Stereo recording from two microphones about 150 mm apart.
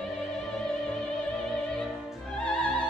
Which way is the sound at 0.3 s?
Centre (ahead or behind).